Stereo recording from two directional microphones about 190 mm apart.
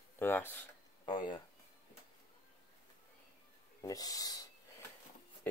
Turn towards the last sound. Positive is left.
turn(degrees=20)  # may be behind; listen again after turning